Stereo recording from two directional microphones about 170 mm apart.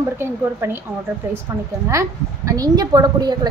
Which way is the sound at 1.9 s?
20° right (ahead or behind).